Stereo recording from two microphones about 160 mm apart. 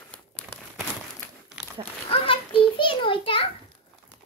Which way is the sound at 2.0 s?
35° left (ahead or behind).